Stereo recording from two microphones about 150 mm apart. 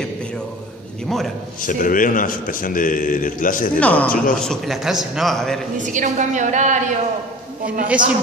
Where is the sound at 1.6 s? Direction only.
65° left (ahead or behind).